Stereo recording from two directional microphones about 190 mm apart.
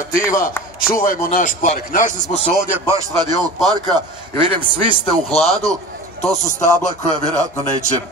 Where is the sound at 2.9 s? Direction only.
20° right (ahead or behind).